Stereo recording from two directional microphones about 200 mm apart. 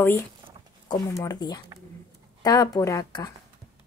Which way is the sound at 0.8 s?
15° left (ahead or behind).